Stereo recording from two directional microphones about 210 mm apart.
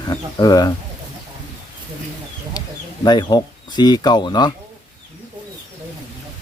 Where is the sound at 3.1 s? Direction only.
20° left (ahead or behind).